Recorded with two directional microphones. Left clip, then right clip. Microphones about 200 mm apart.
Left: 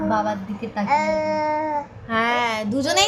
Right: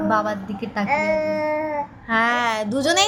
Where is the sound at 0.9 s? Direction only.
5° left (ahead or behind).